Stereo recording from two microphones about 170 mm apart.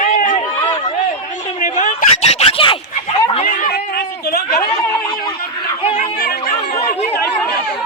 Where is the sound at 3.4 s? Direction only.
65° left (ahead or behind).